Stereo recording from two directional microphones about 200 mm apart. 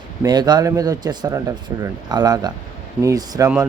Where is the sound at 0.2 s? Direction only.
20° right (ahead or behind).